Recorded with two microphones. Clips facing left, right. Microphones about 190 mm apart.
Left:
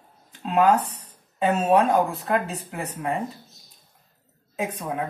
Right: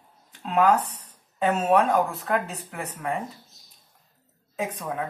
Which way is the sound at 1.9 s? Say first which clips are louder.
Left 2 dB; 20° left (ahead or behind).